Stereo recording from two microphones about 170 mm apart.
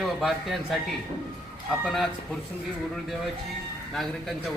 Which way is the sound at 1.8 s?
Centre (ahead or behind).